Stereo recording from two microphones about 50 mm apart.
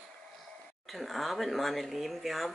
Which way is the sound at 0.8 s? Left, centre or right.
Centre.